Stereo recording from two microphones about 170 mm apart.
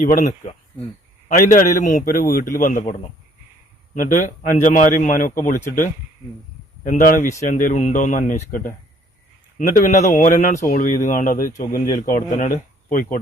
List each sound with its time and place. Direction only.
0.0 s speech: 50° left (ahead or behind)
3.9 s speech: 50° left (ahead or behind)
6.8 s speech: 50° left (ahead or behind)
9.6 s speech: 50° left (ahead or behind)